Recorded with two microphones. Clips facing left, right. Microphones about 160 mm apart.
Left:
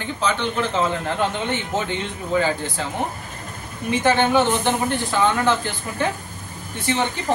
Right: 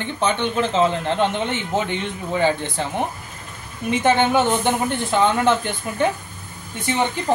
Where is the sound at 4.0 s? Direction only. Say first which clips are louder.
Even; 20° right (ahead or behind).